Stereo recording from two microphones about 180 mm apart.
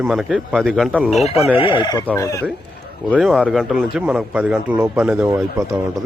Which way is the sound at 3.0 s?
5° right (ahead or behind).